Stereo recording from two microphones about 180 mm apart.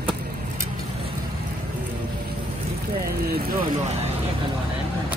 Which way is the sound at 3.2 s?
55° right (ahead or behind).